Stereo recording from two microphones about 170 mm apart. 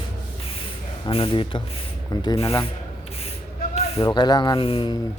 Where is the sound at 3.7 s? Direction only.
40° left (ahead or behind).